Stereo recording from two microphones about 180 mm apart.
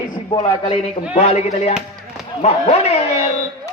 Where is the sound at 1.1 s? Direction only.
35° left (ahead or behind).